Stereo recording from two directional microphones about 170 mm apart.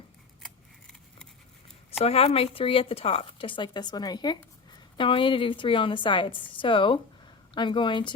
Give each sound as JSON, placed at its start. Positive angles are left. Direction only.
{"t": 0.4, "sound": "scissors", "side_deg": 5}
{"t": 1.9, "sound": "a woman's voice", "side_deg": 35}